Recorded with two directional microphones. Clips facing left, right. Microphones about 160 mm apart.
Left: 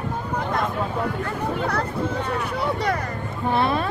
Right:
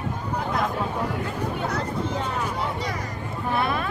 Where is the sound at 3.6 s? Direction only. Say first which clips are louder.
Left 4 dB; 30° left (ahead or behind).